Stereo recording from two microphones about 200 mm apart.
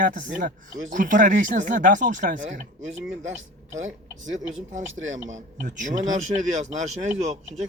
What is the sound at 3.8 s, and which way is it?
Speech, 70° right (ahead or behind).